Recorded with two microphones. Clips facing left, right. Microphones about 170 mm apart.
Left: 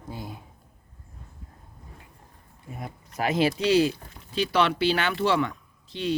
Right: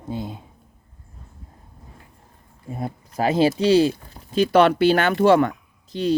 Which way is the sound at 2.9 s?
35° right (ahead or behind).